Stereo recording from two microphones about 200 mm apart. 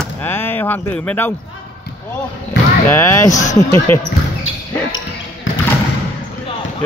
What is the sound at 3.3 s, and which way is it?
Speech, 35° left (ahead or behind).